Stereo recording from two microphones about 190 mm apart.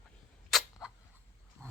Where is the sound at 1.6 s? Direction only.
15° right (ahead or behind).